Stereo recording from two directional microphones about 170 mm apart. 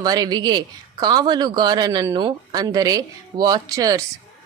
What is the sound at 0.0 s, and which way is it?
A woman's voice, 25° right (ahead or behind).